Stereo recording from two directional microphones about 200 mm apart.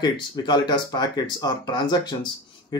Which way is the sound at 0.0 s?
20° left (ahead or behind).